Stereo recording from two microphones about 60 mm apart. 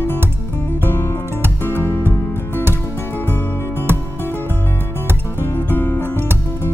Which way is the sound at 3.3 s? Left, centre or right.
Left.